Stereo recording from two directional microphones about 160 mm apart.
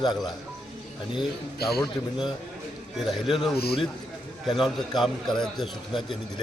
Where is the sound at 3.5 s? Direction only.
75° left (ahead or behind).